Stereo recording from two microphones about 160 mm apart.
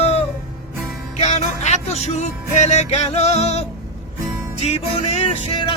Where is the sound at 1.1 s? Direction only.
45° left (ahead or behind).